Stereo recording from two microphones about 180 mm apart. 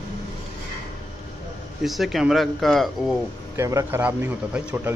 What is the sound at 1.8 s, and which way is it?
Speech, centre (ahead or behind).